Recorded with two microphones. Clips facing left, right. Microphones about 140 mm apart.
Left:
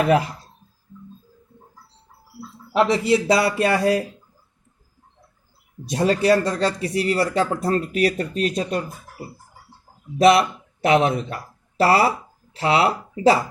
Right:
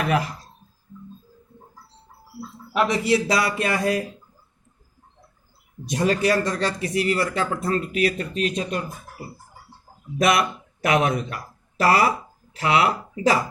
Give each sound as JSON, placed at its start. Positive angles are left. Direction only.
{"t": 2.7, "sound": "a man's voice", "side_deg": 25}
{"t": 5.8, "sound": "speech", "side_deg": 30}
{"t": 10.2, "sound": "speech", "side_deg": 30}